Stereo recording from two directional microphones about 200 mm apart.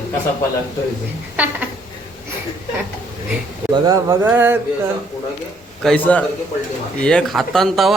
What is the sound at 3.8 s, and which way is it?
Speech, 15° right (ahead or behind).